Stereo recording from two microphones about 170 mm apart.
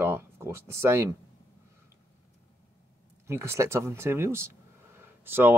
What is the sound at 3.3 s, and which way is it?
Speech, 15° right (ahead or behind).